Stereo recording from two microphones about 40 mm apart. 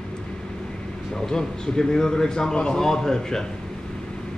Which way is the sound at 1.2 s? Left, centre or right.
Centre.